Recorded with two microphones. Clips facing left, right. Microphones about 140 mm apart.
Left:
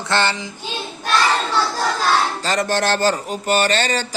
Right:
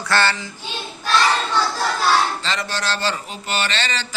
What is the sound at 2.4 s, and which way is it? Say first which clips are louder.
A man's voice: left 6 dB; 45° left (ahead or behind).